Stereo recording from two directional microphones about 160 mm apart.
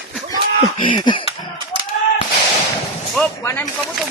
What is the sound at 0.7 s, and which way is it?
Speech, 30° left (ahead or behind).